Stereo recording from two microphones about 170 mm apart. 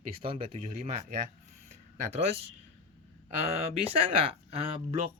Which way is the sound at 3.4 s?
40° right (ahead or behind).